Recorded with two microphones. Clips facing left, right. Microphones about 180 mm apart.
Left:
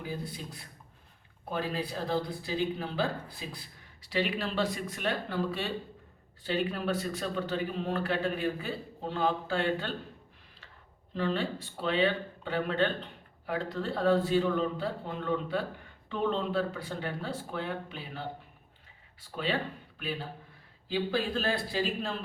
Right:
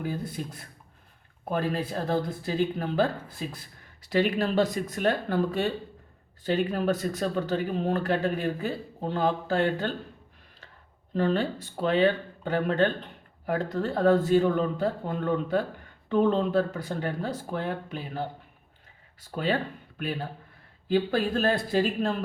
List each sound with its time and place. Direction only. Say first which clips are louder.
0.0 s speech: right 6 dB; 50° right (ahead or behind)
11.1 s speech: right 5 dB; 45° right (ahead or behind)